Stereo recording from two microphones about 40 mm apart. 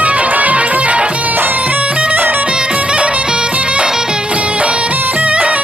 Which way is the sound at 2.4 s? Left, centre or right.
Right.